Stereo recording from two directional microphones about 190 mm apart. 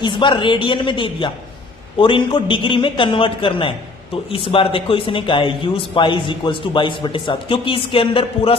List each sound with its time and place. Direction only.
0.0 s a man's voice: 25° left (ahead or behind)